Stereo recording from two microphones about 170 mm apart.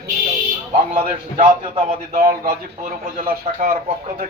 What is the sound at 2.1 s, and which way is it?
Speech, 55° right (ahead or behind).